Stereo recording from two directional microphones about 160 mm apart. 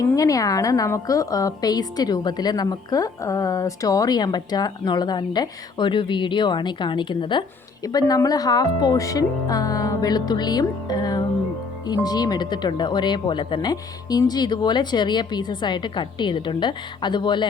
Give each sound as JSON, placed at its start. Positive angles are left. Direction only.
{"t": 0.0, "sound": "a woman's voice", "side_deg": 20}